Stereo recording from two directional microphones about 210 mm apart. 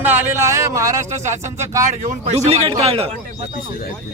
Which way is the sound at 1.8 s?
35° right (ahead or behind).